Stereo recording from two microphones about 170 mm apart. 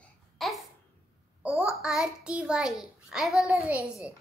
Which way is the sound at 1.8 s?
5° right (ahead or behind).